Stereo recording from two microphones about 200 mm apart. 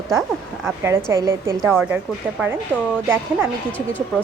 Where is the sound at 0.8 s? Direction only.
10° right (ahead or behind).